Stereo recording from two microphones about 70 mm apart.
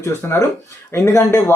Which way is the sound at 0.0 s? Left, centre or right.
Left.